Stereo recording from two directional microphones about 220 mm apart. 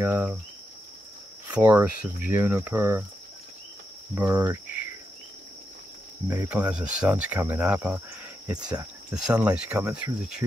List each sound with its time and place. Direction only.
0.0 s speech: 10° right (ahead or behind)
1.5 s speech: 15° right (ahead or behind)
4.1 s speech: 15° right (ahead or behind)
6.2 s speech: 15° right (ahead or behind)
8.5 s speech: 15° right (ahead or behind)
9.1 s speech: 5° right (ahead or behind)